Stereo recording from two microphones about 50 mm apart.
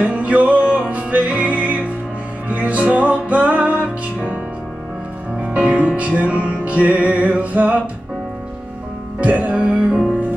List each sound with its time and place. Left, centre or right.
0.0 s music: right
5.4 s music: right
9.2 s music: right